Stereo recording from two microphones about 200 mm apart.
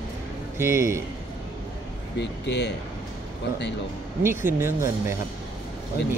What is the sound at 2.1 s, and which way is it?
Speech, 60° left (ahead or behind).